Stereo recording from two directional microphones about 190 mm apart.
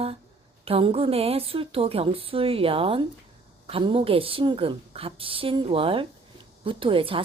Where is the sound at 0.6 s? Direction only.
30° right (ahead or behind).